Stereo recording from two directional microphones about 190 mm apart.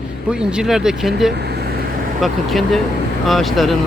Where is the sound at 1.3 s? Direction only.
60° right (ahead or behind).